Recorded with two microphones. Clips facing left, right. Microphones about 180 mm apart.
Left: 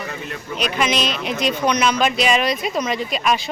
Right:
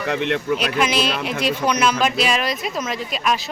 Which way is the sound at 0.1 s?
80° right.